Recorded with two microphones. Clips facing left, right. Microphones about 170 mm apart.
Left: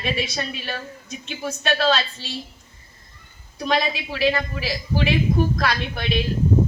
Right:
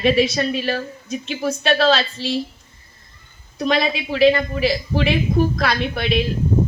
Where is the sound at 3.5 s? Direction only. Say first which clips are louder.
Right 3 dB; 55° right (ahead or behind).